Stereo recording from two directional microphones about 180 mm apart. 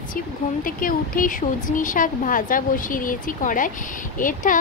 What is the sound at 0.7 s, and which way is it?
Speech, 50° left (ahead or behind).